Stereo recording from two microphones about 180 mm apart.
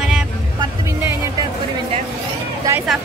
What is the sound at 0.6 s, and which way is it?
Music, 15° right (ahead or behind).